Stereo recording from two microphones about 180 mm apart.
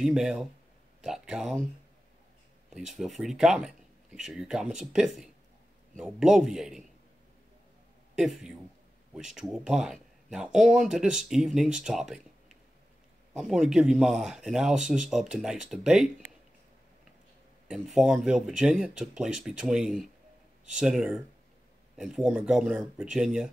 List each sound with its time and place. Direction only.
0.0 s speech: 5° right (ahead or behind)
2.7 s speech: centre (ahead or behind)
8.2 s speech: centre (ahead or behind)
17.6 s speech: 5° right (ahead or behind)